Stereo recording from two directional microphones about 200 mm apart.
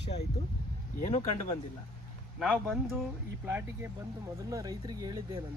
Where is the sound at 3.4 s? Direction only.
10° right (ahead or behind).